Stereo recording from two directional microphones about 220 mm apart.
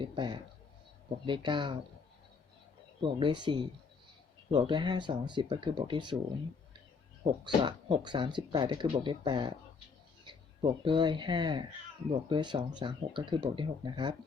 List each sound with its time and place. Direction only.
0.0 s speech: 20° right (ahead or behind)
3.0 s speech: 20° right (ahead or behind)
7.3 s speech: 25° right (ahead or behind)